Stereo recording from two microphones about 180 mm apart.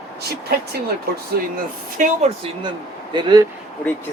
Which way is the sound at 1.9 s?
35° right (ahead or behind).